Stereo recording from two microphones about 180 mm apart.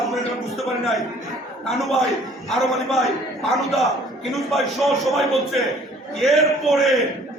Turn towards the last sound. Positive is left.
turn(degrees=0)  # may be behind; listen again after turning